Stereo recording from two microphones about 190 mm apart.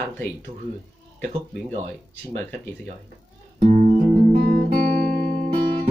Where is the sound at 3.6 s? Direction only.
40° right (ahead or behind).